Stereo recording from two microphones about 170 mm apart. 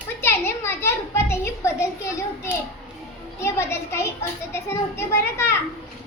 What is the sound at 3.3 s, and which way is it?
Children playing, 15° left (ahead or behind).